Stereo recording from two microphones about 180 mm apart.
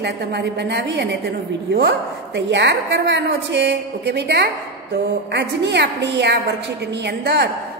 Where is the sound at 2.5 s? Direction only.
75° right (ahead or behind).